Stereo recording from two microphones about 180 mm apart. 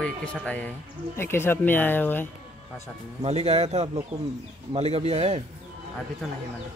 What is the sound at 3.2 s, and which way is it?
Speech, 35° right (ahead or behind).